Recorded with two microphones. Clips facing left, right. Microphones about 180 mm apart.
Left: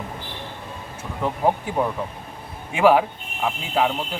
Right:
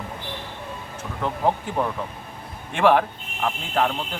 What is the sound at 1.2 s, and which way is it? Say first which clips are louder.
A man's voice: left 2 dB; 10° left (ahead or behind).